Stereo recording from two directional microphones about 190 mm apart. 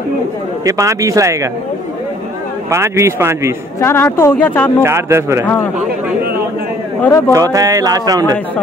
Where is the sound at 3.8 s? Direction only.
10° left (ahead or behind).